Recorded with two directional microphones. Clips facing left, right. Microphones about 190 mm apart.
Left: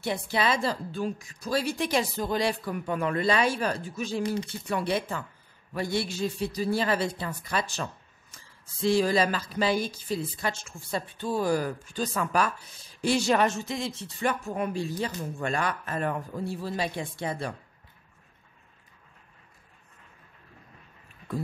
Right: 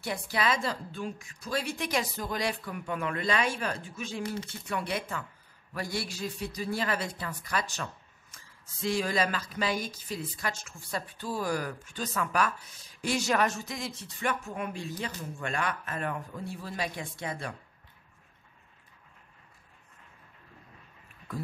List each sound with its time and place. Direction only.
0.0 s a man's voice: 25° left (ahead or behind)